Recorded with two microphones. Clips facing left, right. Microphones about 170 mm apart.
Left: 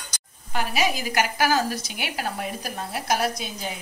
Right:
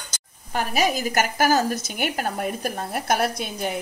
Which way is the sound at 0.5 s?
45° right (ahead or behind).